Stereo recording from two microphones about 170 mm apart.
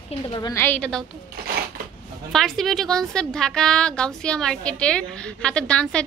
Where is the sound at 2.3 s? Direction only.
Centre (ahead or behind).